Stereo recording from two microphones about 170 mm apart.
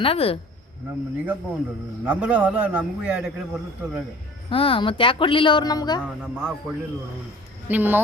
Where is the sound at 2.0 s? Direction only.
10° right (ahead or behind).